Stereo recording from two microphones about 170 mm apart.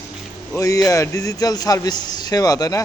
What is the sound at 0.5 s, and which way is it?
A man's voice, 20° left (ahead or behind).